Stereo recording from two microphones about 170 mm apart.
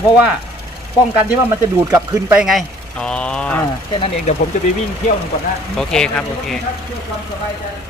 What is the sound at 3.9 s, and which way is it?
Speech, 30° left (ahead or behind).